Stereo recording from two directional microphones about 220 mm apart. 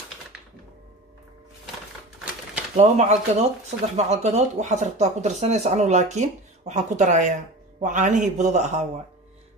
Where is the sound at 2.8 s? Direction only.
30° right (ahead or behind).